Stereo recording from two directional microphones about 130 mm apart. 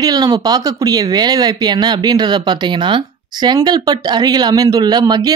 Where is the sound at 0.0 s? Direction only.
30° right (ahead or behind).